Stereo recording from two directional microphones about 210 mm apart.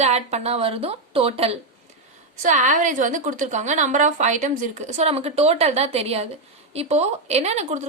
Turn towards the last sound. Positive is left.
turn(degrees=-30)  # may be behind; listen again after turning